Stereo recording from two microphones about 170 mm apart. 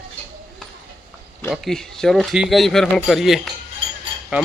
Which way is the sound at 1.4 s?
Centre (ahead or behind).